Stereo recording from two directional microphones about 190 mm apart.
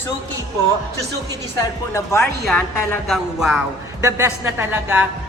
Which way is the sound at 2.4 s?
5° left (ahead or behind).